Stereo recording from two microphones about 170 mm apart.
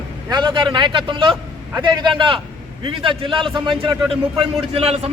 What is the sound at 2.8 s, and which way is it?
A man's voice, 30° right (ahead or behind).